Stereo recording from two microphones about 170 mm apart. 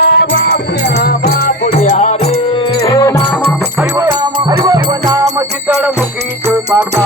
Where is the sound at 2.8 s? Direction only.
20° left (ahead or behind).